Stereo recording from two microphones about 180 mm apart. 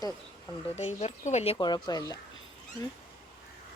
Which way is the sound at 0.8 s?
40° left (ahead or behind).